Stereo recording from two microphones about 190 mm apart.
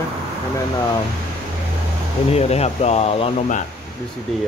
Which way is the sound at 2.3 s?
35° left (ahead or behind).